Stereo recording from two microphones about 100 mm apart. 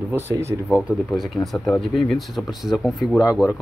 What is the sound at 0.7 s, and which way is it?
Speech, 10° right (ahead or behind).